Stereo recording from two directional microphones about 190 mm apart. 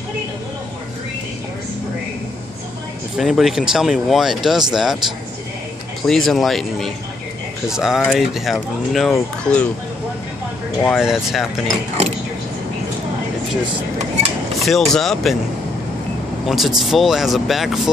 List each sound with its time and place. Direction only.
3.2 s speech: centre (ahead or behind)
6.0 s speech: centre (ahead or behind)
10.8 s speech: centre (ahead or behind)
13.9 s speech: 35° right (ahead or behind)
14.6 s speech: centre (ahead or behind)
16.4 s speech: centre (ahead or behind)